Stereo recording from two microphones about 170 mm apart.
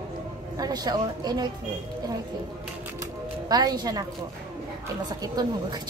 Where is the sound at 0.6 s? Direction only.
25° right (ahead or behind).